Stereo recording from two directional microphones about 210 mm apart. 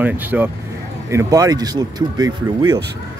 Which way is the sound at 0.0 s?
10° right (ahead or behind).